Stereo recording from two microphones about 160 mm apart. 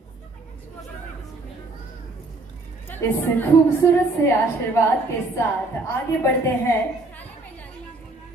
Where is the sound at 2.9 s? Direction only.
10° left (ahead or behind).